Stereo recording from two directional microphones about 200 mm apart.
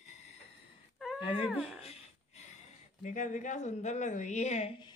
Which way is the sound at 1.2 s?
25° left (ahead or behind).